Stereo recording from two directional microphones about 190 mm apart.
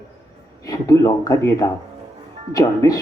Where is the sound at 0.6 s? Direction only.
20° left (ahead or behind).